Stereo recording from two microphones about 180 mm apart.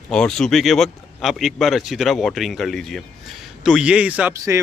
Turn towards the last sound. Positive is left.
turn(degrees=-5)  # may be behind; listen again after turning